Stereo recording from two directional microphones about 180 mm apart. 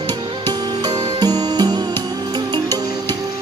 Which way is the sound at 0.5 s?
20° right (ahead or behind).